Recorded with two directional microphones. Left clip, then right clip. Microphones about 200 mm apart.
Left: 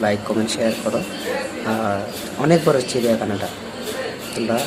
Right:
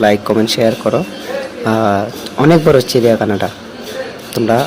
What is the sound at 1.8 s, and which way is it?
Speech, 40° right (ahead or behind).